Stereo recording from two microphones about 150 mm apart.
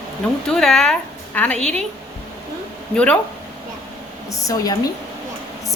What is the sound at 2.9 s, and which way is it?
Speech, 10° left (ahead or behind).